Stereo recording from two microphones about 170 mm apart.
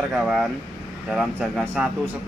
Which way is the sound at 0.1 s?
Centre (ahead or behind).